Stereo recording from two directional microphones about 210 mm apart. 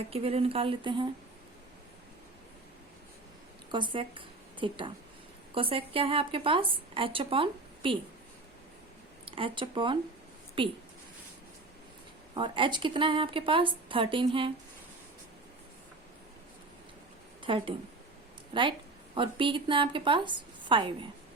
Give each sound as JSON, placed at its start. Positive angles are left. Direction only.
{"t": 0.1, "sound": "a woman's voice", "side_deg": -30}
{"t": 3.7, "sound": "a woman's voice", "side_deg": -20}
{"t": 9.2, "sound": "a woman's voice", "side_deg": -25}
{"t": 12.3, "sound": "a woman's voice", "side_deg": -25}
{"t": 17.4, "sound": "a woman's voice", "side_deg": -25}